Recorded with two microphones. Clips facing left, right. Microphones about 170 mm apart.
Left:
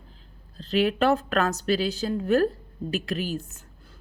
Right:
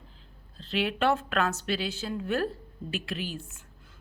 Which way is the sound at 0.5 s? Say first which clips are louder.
Left 7 dB; 40° left (ahead or behind).